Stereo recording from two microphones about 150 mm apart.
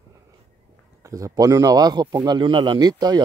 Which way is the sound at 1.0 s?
20° right (ahead or behind).